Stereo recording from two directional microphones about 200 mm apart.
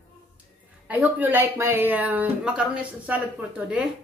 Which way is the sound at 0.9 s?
10° right (ahead or behind).